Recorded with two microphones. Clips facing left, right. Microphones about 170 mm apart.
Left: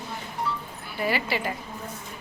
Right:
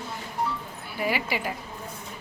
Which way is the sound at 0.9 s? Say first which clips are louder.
Left 1 dB; 10° right (ahead or behind).